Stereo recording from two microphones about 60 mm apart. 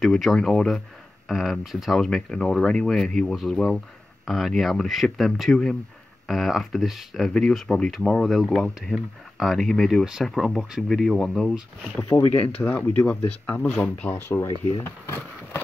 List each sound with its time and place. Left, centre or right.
0.0 s speech: centre
2.0 s speech: centre
12.4 s speech: left
14.1 s speech: left
14.4 s speech: left